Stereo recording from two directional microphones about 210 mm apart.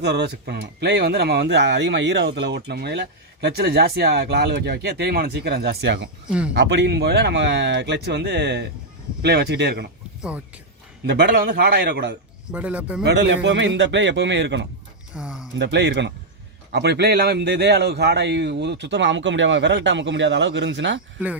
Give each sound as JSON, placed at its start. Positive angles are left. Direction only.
{"t": 0.0, "sound": "speech", "side_deg": -55}
{"t": 10.2, "sound": "speech", "side_deg": -5}
{"t": 11.0, "sound": "speech", "side_deg": -50}
{"t": 12.5, "sound": "speech", "side_deg": -5}
{"t": 13.1, "sound": "a man's voice", "side_deg": -55}
{"t": 15.1, "sound": "a sound", "side_deg": 0}
{"t": 15.5, "sound": "a man's voice", "side_deg": -60}